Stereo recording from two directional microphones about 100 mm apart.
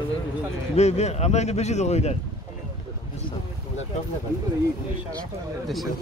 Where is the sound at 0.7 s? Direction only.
90° left.